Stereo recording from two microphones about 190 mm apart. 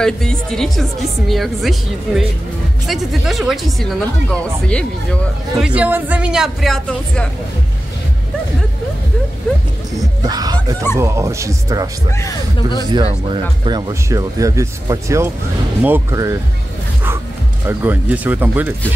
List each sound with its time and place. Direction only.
0.0 s speech: 5° left (ahead or behind)
5.6 s speech: 5° right (ahead or behind)
9.9 s music: 20° right (ahead or behind)
11.0 s speech: 15° right (ahead or behind)
12.2 s speech: 20° left (ahead or behind)
12.9 s speech: 25° right (ahead or behind)
17.6 s speech: 10° right (ahead or behind)